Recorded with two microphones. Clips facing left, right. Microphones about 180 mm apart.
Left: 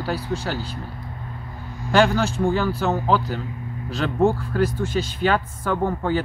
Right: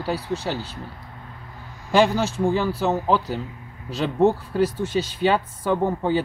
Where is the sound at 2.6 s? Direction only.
15° right (ahead or behind).